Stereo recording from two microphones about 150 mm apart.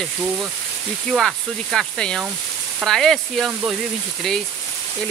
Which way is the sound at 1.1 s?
Centre (ahead or behind).